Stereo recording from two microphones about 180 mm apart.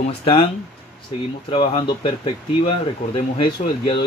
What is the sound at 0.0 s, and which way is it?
Speech, 35° left (ahead or behind).